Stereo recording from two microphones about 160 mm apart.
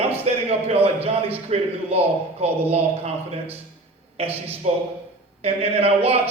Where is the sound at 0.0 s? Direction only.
40° right (ahead or behind).